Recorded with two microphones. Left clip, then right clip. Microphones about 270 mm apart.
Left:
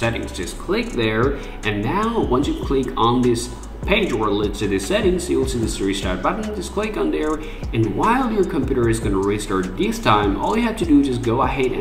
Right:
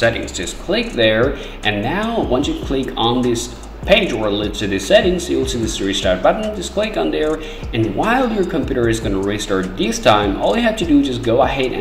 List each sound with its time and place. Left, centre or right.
0.7 s speech: centre